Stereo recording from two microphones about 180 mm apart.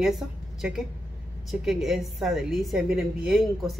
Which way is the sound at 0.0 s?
Centre (ahead or behind).